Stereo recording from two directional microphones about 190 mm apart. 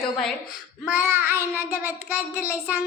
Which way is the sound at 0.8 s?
10° right (ahead or behind).